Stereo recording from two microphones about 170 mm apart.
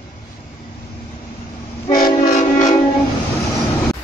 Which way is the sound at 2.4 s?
50° left (ahead or behind).